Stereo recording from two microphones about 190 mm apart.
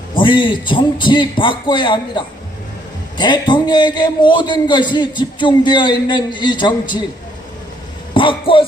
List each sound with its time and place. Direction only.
0.2 s a man's voice: 25° left (ahead or behind)
8.1 s a man's voice: 25° left (ahead or behind)